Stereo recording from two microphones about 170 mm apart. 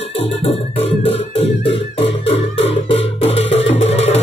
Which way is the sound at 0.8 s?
35° left (ahead or behind).